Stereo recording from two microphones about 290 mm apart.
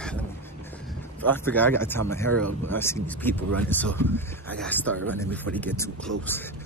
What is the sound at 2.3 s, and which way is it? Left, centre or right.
Speech, right.